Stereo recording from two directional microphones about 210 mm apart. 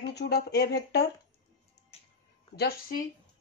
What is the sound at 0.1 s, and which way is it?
Speech, 50° left (ahead or behind).